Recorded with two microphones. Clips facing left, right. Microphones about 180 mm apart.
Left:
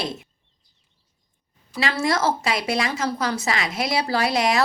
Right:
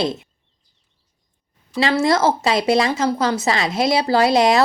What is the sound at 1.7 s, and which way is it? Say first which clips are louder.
Speech: right 6 dB; 25° right (ahead or behind).